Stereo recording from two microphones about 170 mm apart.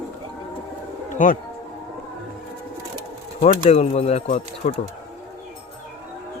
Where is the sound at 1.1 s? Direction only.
50° left (ahead or behind).